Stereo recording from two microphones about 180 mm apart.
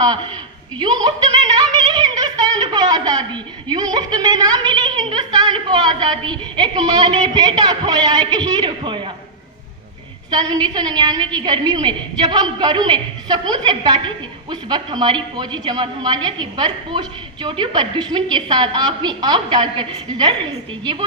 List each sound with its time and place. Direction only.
0.8 s a woman's voice: 20° right (ahead or behind)
1.5 s a sound: 20° right (ahead or behind)
2.6 s a woman's voice: 20° right (ahead or behind)
10.3 s a woman's voice: 25° right (ahead or behind)